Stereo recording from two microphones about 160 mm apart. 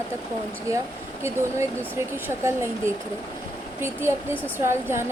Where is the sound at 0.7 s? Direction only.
20° right (ahead or behind).